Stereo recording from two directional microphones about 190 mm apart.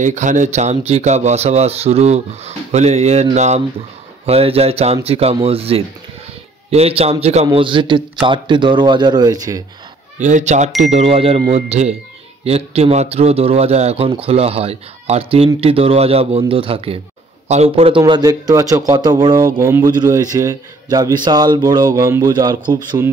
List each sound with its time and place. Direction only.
0.0 s a man's voice: 40° right (ahead or behind); by 9.6 s 20° right (ahead or behind)
10.1 s a man's voice: 40° right (ahead or behind); by 22.8 s 20° right (ahead or behind)